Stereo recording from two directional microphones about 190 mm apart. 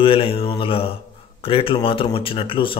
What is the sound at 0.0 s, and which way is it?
Speech, 30° left (ahead or behind).